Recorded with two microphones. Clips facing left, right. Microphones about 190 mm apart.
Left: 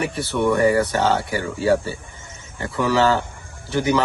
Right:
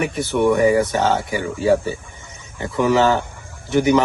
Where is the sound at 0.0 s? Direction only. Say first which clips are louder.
Right 3 dB; 20° right (ahead or behind).